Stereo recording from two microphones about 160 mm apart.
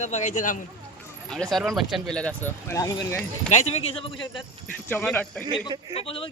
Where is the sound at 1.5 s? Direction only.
Centre (ahead or behind); by 3.2 s 20° left (ahead or behind).